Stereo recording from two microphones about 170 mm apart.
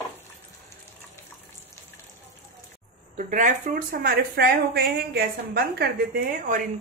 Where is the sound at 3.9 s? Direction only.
70° right (ahead or behind).